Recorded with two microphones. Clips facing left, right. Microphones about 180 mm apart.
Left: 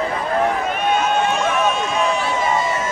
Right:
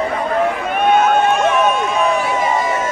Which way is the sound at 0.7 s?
55° right (ahead or behind).